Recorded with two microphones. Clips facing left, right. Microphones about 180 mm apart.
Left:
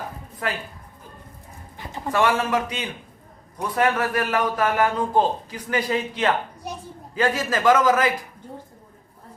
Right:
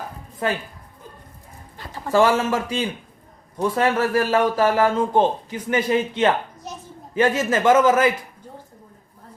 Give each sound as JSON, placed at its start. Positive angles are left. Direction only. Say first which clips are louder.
{"t": 0.4, "sound": "a man's voice", "louder": "right 4 dB", "side_deg": -25}
{"t": 2.1, "sound": "a man's voice", "louder": "right 4 dB", "side_deg": -30}
{"t": 6.7, "sound": "a sound", "louder": "left 2 dB", "side_deg": 15}
{"t": 7.2, "sound": "a man's voice", "louder": "right 4 dB", "side_deg": -25}